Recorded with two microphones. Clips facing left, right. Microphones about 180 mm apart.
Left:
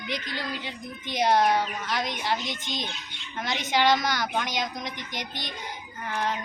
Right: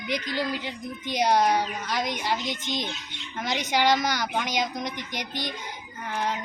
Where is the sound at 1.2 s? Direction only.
15° right (ahead or behind).